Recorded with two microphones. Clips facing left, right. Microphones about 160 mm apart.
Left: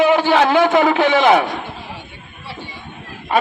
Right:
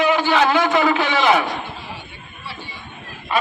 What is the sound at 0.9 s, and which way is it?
Speech, 55° left (ahead or behind).